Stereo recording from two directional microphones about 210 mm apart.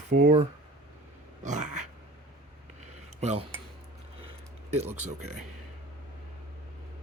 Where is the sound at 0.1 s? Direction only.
35° right (ahead or behind).